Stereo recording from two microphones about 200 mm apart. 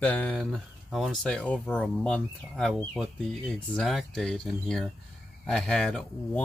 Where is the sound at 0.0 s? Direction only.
5° left (ahead or behind).